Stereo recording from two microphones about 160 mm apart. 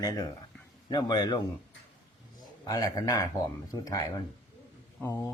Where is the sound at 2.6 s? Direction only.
25° left (ahead or behind).